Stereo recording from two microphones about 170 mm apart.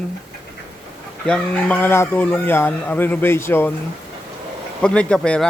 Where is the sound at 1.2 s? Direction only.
5° left (ahead or behind).